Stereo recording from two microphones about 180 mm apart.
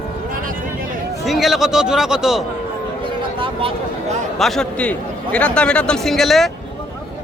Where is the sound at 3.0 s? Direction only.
30° right (ahead or behind).